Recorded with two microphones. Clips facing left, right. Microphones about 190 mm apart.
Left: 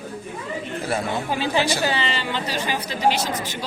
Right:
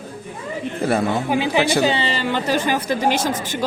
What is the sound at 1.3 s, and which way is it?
Speech, 15° right (ahead or behind).